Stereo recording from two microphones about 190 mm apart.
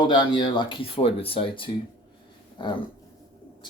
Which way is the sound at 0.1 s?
25° left (ahead or behind).